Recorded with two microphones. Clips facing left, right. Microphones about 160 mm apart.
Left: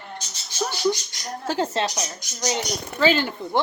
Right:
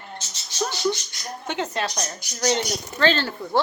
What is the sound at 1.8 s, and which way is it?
Speech, 30° left (ahead or behind).